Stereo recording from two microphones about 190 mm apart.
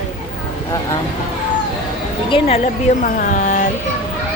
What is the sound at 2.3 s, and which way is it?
A man's voice, 30° left (ahead or behind).